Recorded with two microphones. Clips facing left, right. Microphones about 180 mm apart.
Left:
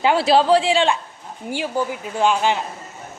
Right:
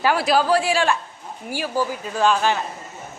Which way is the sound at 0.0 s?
25° left (ahead or behind).